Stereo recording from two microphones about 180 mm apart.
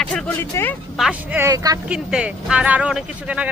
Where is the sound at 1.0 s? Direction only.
10° right (ahead or behind).